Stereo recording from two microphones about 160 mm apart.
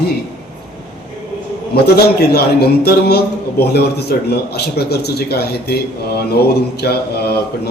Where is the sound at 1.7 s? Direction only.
80° left.